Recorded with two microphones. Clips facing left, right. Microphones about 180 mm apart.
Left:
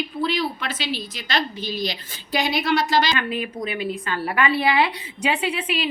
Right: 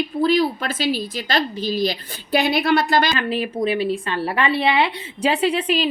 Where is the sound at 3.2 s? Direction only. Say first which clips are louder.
Right 4 dB; 35° right (ahead or behind).